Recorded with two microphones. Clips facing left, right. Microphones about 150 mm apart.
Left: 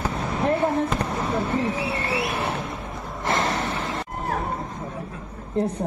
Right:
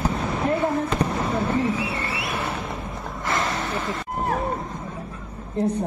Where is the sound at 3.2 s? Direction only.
25° left (ahead or behind).